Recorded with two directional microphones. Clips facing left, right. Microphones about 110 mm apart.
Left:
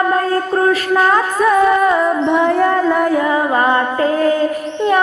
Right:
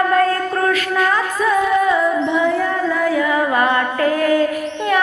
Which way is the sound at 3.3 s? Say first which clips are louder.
Left 2 dB; 30° left (ahead or behind).